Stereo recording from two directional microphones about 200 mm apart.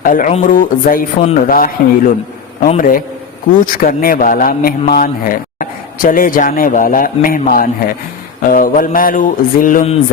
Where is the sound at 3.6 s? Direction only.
45° left (ahead or behind).